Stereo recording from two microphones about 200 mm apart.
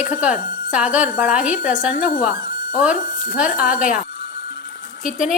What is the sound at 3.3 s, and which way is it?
Speech, 5° right (ahead or behind).